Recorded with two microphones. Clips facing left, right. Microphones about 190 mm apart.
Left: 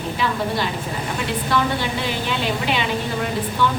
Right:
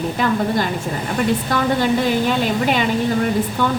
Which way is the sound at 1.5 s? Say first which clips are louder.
Right 1 dB; 45° right (ahead or behind).